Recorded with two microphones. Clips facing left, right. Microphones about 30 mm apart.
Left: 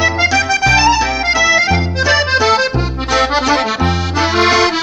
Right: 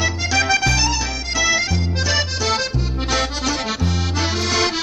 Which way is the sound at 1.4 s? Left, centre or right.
Centre.